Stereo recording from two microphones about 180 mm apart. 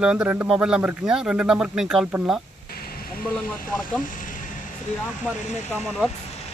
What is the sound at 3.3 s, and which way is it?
Speech, 10° left (ahead or behind).